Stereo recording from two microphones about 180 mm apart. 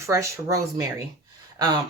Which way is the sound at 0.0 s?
15° right (ahead or behind).